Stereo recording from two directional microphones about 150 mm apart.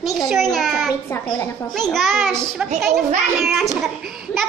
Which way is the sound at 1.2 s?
30° left (ahead or behind).